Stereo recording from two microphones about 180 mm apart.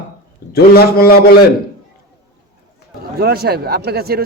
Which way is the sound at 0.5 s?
60° left (ahead or behind).